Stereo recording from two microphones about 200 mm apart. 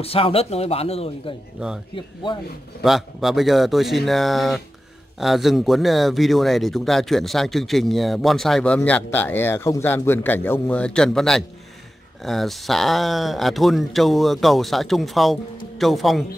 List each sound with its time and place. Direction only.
0.0 s speech: 30° left (ahead or behind)
2.8 s speech: centre (ahead or behind)